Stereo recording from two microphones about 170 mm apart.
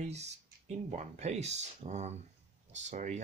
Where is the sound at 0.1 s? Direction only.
40° right (ahead or behind).